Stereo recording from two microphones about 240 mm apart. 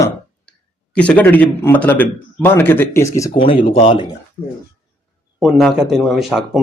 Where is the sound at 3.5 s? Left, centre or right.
Left.